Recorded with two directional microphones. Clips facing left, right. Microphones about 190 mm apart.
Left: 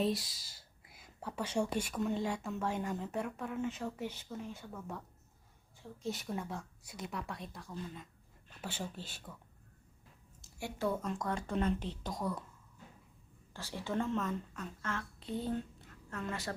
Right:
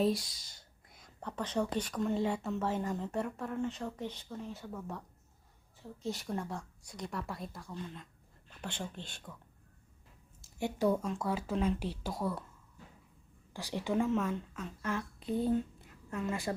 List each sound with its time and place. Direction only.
0.0 s speech: centre (ahead or behind)
10.6 s speech: 15° right (ahead or behind)
13.5 s speech: 15° right (ahead or behind)